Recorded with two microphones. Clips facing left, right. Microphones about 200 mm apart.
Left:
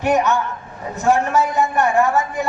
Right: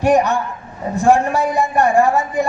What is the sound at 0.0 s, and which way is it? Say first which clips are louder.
A man's voice: right 3 dB; 35° right (ahead or behind).